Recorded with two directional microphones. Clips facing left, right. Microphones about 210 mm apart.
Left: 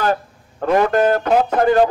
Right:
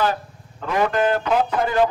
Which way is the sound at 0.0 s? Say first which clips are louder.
Left 3 dB; 50° left (ahead or behind).